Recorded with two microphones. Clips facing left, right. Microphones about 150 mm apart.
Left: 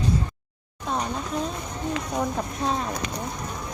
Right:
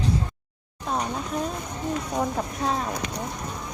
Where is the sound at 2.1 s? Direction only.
5° right (ahead or behind).